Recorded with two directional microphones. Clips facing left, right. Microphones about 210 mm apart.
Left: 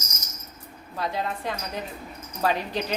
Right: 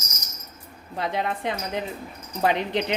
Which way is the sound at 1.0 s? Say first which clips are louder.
Right 2 dB; 20° right (ahead or behind).